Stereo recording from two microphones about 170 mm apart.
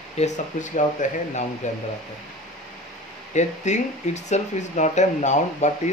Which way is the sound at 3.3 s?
45° left (ahead or behind).